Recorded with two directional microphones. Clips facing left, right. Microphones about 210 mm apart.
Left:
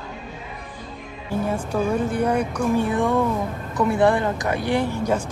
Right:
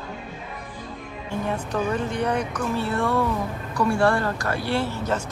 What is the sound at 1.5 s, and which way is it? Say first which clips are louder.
Speech: left 2 dB; 10° left (ahead or behind).